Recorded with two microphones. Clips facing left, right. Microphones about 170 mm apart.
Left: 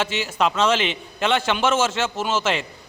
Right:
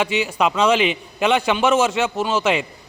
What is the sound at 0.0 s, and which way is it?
A man's voice, 10° right (ahead or behind).